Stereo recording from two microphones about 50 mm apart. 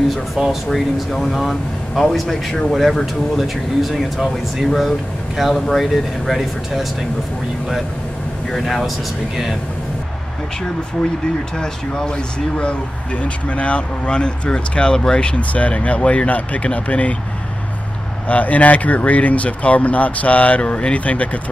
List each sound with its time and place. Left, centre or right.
0.1 s speech: centre
8.5 s speech: centre
11.5 s speech: centre
18.2 s speech: left